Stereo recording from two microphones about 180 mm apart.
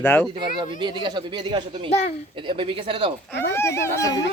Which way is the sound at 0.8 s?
25° right (ahead or behind).